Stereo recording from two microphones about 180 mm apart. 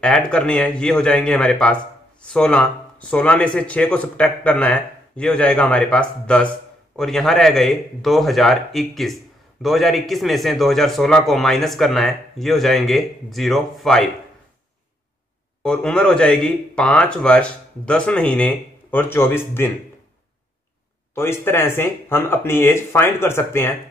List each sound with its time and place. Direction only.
0.0 s a man's voice: 5° left (ahead or behind)
15.6 s speech: 5° left (ahead or behind)
21.1 s speech: 15° left (ahead or behind)